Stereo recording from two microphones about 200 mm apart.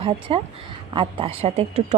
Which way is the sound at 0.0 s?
30° right (ahead or behind).